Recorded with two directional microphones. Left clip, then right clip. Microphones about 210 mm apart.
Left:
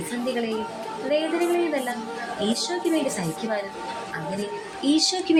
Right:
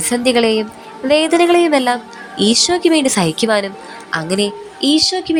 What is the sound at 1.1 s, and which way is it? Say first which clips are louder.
A woman's voice: right 12 dB; 30° right (ahead or behind).